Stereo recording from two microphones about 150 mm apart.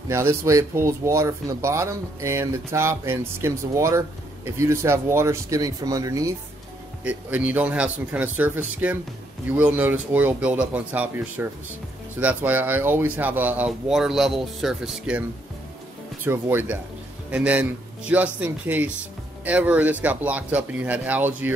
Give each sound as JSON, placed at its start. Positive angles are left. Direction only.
{"t": 0.1, "sound": "speech", "side_deg": -20}
{"t": 7.1, "sound": "speech", "side_deg": -10}
{"t": 16.3, "sound": "speech", "side_deg": -15}